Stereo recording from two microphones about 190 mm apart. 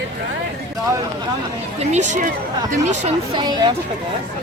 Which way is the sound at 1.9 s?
40° right (ahead or behind).